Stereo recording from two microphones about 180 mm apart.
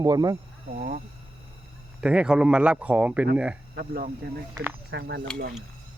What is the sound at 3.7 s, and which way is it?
Speech, 55° right (ahead or behind).